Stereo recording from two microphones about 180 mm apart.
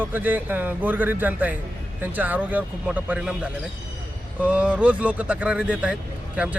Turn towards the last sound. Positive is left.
turn(degrees=-5)  # may be behind; listen again after turning